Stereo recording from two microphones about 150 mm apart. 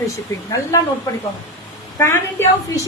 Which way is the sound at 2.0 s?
15° left (ahead or behind).